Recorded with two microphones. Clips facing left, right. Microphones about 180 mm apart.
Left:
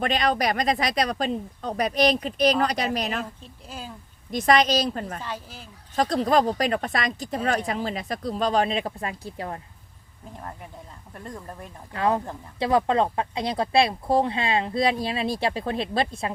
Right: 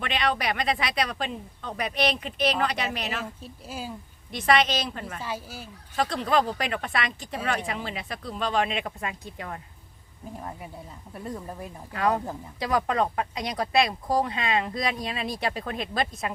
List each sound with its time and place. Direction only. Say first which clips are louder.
0.0 s speech: left 4 dB; 40° left (ahead or behind)
3.4 s speech: right 2 dB; 10° right (ahead or behind)
4.3 s speech: left 3 dB; 40° left (ahead or behind)
5.2 s speech: right 1 dB; 10° right (ahead or behind)
6.0 s speech: left 4 dB; 40° left (ahead or behind)
10.3 s speech: right 1 dB; 10° right (ahead or behind)
11.9 s speech: left 1 dB; 25° left (ahead or behind)